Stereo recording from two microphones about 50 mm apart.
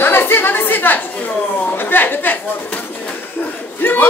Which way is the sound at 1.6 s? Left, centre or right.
Left.